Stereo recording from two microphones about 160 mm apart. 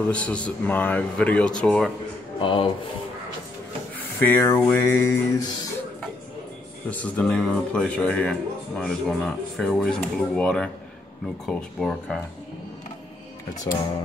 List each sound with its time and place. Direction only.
0.0 s speech: 5° left (ahead or behind)
2.3 s speech: 30° left (ahead or behind)
4.2 s speech: 15° left (ahead or behind)
6.9 s speech: 10° left (ahead or behind)